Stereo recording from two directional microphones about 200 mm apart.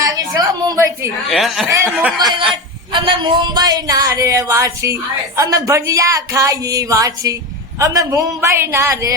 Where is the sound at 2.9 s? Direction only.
25° right (ahead or behind).